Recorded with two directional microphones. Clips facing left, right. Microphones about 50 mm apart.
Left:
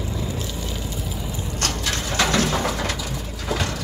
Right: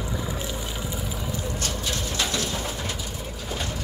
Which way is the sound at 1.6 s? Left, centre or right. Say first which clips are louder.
Left 4 dB; left.